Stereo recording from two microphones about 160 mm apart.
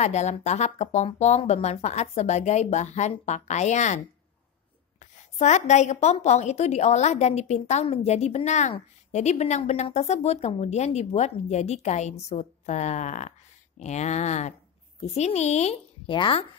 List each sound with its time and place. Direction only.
0.0 s a woman's voice: 45° left (ahead or behind)
5.4 s a woman's voice: 45° left (ahead or behind)
16.1 s speech: 35° left (ahead or behind)